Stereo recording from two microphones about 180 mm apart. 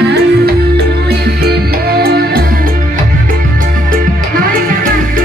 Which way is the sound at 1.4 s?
60° right (ahead or behind).